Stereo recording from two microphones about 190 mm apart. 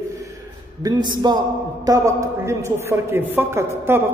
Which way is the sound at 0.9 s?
20° right (ahead or behind).